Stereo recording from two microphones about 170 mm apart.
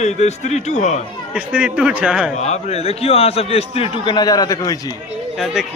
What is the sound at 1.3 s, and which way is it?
Speech, 5° right (ahead or behind).